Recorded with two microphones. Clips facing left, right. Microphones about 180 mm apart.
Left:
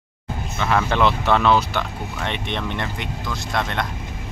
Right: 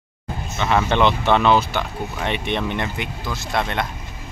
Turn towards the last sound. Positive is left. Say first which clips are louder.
# right 1 dB
turn(degrees=-5)  # may be behind; listen again after turning